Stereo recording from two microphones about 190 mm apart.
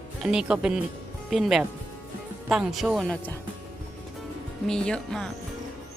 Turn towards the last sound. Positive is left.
turn(degrees=5)  # may be behind; listen again after turning